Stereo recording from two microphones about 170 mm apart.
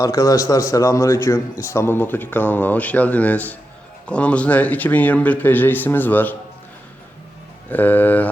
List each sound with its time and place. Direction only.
0.0 s a man's voice: 20° left (ahead or behind)
7.7 s speech: 10° left (ahead or behind)